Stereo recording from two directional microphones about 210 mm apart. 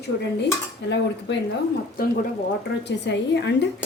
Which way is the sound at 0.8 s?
55° left (ahead or behind).